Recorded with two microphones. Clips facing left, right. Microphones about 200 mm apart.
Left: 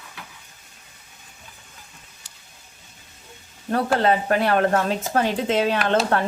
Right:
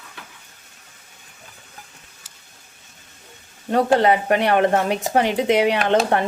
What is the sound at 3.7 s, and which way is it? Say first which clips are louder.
Speech: right 3 dB; 20° right (ahead or behind).